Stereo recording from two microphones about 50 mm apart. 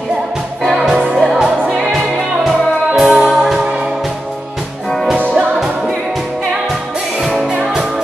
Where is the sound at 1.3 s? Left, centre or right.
Centre.